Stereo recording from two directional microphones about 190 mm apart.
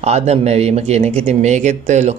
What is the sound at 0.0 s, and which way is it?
Speech, 35° right (ahead or behind).